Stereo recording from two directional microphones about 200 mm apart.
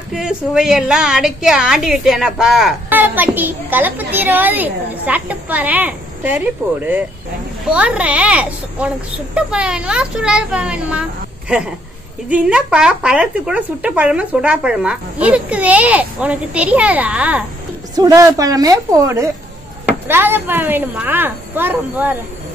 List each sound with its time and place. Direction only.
0.1 s a woman's voice: 5° right (ahead or behind)
17.9 s a woman's voice: 15° right (ahead or behind)